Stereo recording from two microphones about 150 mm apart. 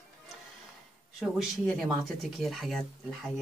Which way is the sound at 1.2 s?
Centre (ahead or behind).